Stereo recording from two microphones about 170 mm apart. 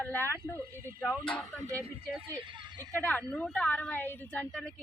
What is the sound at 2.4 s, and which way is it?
Speech, 30° right (ahead or behind).